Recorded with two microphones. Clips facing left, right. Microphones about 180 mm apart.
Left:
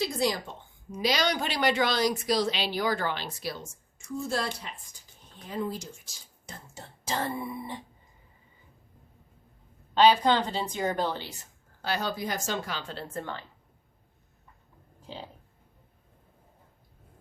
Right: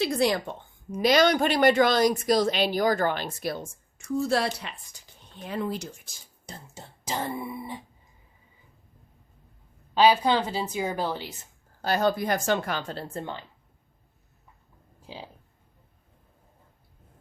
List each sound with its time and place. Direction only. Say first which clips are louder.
0.0 s a woman's voice: right 4 dB; 65° right (ahead or behind)
6.4 s beatboxing: right 2 dB; 30° right (ahead or behind)
7.1 s a woman's voice: even; 10° right (ahead or behind)
9.9 s a woman's voice: right 1 dB; 10° right (ahead or behind)
11.8 s a woman's voice: right 7 dB; 45° right (ahead or behind)
13.1 s speech: even; 20° right (ahead or behind)
15.0 s speech: even; 10° right (ahead or behind)